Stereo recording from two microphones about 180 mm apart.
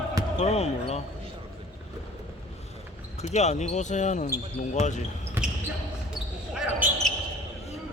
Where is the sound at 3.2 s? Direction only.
40° left (ahead or behind).